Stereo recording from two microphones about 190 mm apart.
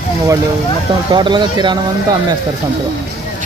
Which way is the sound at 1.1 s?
25° right (ahead or behind).